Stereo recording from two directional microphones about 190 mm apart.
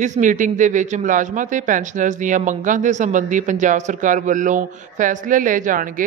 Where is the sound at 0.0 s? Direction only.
40° right (ahead or behind).